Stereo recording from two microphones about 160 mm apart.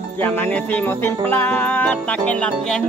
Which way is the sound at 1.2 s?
10° left (ahead or behind).